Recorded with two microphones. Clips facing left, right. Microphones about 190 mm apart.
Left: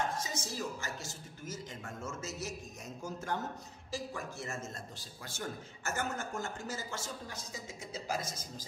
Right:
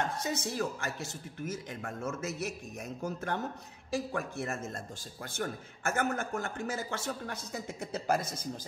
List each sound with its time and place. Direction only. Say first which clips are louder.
0.2 s a man's voice: right 6 dB; 60° right (ahead or behind)